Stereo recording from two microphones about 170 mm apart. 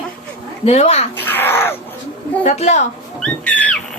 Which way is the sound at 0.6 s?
40° left (ahead or behind).